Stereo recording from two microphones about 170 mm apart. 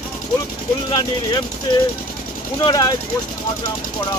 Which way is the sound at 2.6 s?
25° left (ahead or behind).